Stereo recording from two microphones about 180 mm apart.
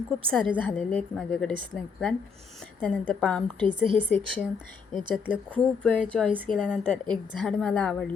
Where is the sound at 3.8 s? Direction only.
30° right (ahead or behind).